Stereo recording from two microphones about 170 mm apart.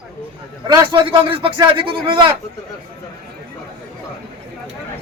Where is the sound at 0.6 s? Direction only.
25° right (ahead or behind).